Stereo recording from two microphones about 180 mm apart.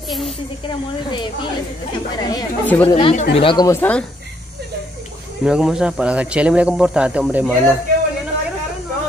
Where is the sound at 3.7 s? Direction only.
10° left (ahead or behind).